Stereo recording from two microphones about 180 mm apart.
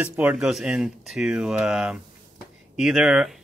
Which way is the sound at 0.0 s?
10° right (ahead or behind).